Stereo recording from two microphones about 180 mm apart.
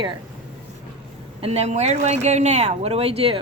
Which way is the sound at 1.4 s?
35° right (ahead or behind).